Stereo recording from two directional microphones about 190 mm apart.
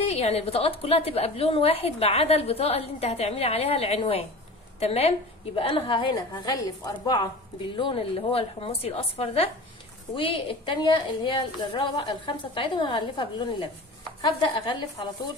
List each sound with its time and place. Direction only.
0.0 s a woman's voice: 35° left (ahead or behind)